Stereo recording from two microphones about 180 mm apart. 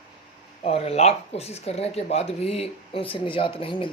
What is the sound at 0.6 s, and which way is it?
Speech, 35° left (ahead or behind).